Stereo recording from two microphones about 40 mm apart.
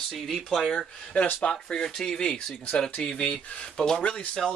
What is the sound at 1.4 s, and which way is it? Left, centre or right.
Speech, centre.